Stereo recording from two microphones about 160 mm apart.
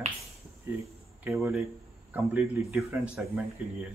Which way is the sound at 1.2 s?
Centre (ahead or behind).